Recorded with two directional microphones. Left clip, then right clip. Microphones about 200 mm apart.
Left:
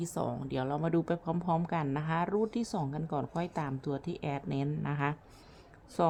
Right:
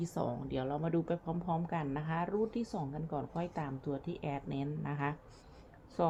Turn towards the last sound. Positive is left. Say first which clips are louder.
# left 4 dB
turn(degrees=25)  # may be behind; listen again after turning